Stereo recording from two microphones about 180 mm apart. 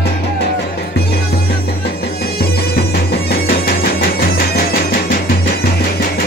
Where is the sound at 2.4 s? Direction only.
60° left (ahead or behind).